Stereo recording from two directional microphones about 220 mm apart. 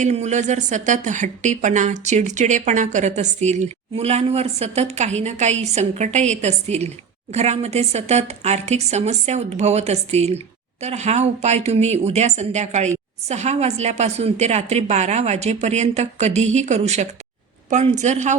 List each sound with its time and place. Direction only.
0.0 s a woman's voice: 30° right (ahead or behind)